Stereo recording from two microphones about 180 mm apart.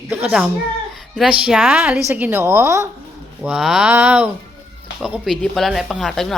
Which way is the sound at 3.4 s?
5° right (ahead or behind).